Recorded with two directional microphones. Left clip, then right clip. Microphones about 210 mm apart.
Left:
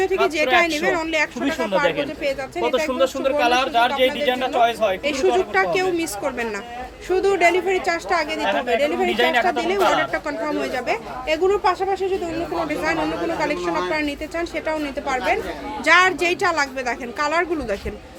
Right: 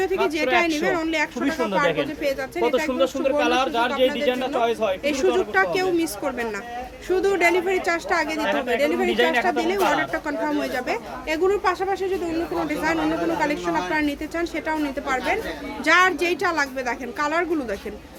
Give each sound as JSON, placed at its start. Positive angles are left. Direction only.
{"t": 0.0, "sound": "speech", "side_deg": 0}
{"t": 1.5, "sound": "a man's voice", "side_deg": -10}
{"t": 2.9, "sound": "a man's voice", "side_deg": -15}
{"t": 5.0, "sound": "speech", "side_deg": -5}
{"t": 8.4, "sound": "a woman's voice", "side_deg": -25}
{"t": 8.8, "sound": "speech", "side_deg": -5}